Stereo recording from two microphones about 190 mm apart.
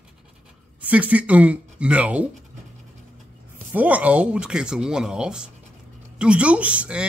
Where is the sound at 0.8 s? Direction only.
5° right (ahead or behind).